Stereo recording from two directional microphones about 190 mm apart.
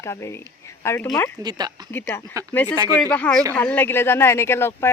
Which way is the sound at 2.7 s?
20° right (ahead or behind).